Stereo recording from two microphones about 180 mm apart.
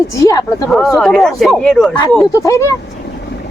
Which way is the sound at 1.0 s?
Centre (ahead or behind).